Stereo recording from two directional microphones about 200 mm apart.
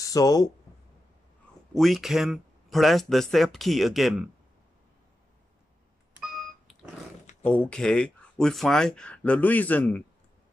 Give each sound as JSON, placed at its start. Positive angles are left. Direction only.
{"t": 0.0, "sound": "speech", "side_deg": 15}
{"t": 1.7, "sound": "speech", "side_deg": 0}
{"t": 7.4, "sound": "speech", "side_deg": 5}